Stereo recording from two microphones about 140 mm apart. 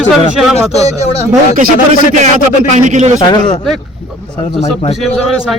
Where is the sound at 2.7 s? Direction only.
60° right (ahead or behind).